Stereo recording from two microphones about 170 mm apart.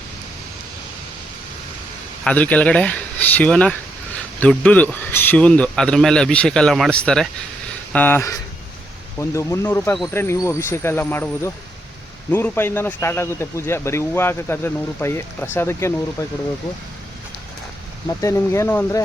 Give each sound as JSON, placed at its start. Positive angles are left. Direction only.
{"t": 2.2, "sound": "speech", "side_deg": 10}
{"t": 18.2, "sound": "speech", "side_deg": 15}